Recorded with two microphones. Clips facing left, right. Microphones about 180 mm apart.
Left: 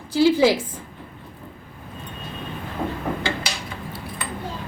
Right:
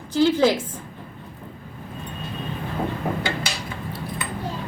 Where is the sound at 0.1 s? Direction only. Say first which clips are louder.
Left 1 dB; 10° left (ahead or behind).